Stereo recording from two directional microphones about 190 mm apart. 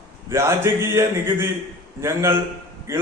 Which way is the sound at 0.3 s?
15° right (ahead or behind).